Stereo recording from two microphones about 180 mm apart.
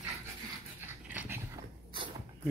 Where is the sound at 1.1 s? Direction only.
10° right (ahead or behind).